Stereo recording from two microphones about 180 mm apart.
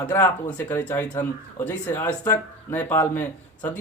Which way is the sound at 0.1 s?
10° left (ahead or behind).